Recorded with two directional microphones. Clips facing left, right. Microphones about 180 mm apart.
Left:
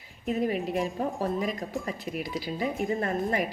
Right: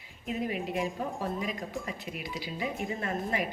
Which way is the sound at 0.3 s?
40° left (ahead or behind).